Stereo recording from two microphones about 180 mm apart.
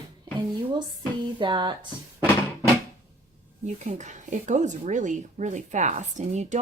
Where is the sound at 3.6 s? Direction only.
40° right (ahead or behind).